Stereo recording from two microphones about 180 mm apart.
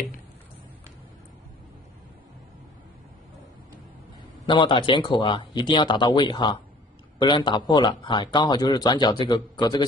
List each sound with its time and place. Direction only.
4.5 s speech: 25° left (ahead or behind)